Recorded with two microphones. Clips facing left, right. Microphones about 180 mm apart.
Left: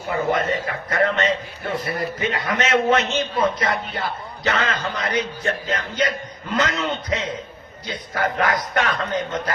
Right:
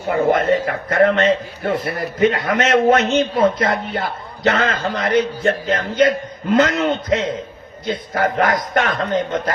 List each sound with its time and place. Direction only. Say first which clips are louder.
0.1 s a man's voice: right 6 dB; 55° right (ahead or behind)